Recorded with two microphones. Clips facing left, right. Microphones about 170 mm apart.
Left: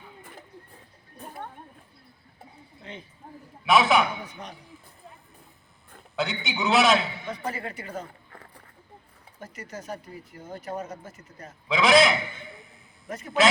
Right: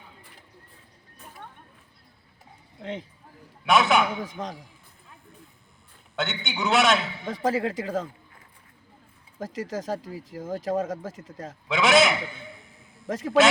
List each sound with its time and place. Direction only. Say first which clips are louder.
0.2 s a sound: left 7 dB; 45° left (ahead or behind)
2.8 s speech: right 8 dB; 90° right
3.7 s a man's voice: even; centre (ahead or behind)
4.2 s speech: right 7 dB; 90° right
6.1 s a man's voice: left 1 dB; centre (ahead or behind)
7.3 s speech: right 7 dB; 90° right
8.3 s a sound: left 7 dB; 65° left (ahead or behind)
9.4 s speech: right 8 dB; 90° right
11.7 s a man's voice: left 1 dB; centre (ahead or behind)
13.1 s speech: right 8 dB; 90° right